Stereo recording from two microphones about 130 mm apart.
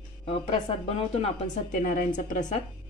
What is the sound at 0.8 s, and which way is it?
Speech, 50° left (ahead or behind).